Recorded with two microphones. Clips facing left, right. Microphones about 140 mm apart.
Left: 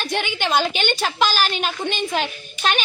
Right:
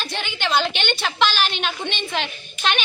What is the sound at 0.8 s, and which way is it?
A woman's voice, 45° left (ahead or behind).